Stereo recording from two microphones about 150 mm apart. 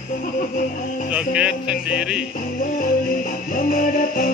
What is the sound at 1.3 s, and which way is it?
Music, 5° right (ahead or behind).